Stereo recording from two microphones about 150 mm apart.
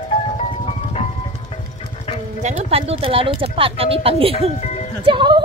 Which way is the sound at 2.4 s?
40° right (ahead or behind).